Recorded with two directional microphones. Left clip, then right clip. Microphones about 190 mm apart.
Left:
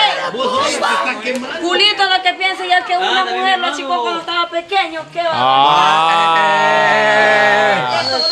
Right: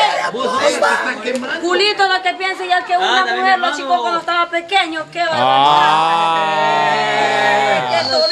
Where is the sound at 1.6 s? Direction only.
20° left (ahead or behind).